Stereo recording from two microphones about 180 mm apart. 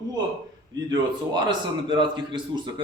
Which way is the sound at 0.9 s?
25° right (ahead or behind).